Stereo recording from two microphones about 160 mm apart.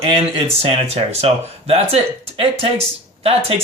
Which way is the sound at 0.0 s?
35° right (ahead or behind).